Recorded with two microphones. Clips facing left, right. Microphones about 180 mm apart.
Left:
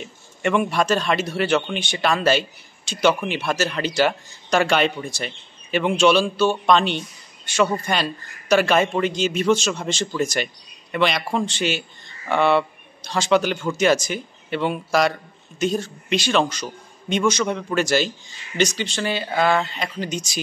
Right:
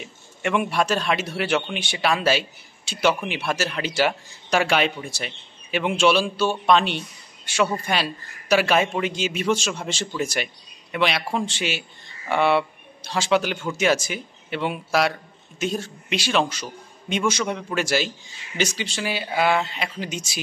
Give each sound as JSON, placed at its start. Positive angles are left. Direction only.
{"t": 0.0, "sound": "a man's voice", "side_deg": -5}